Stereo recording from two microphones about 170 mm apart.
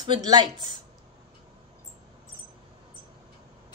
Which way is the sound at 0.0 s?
25° right (ahead or behind).